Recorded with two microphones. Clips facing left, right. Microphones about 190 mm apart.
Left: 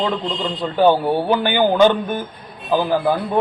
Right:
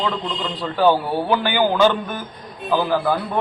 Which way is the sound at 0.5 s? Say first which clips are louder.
Left 2 dB; 20° left (ahead or behind).